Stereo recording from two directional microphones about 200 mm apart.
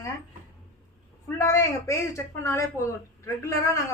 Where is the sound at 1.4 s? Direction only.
15° left (ahead or behind).